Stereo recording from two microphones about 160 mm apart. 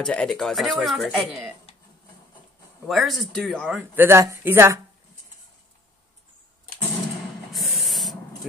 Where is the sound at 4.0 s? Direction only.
15° right (ahead or behind).